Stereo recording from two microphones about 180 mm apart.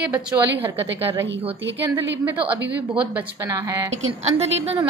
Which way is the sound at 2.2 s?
10° right (ahead or behind).